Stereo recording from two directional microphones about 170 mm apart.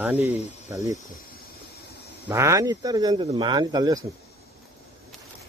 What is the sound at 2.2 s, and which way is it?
Speech, 15° right (ahead or behind).